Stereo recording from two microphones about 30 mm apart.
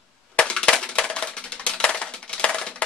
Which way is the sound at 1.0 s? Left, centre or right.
Left.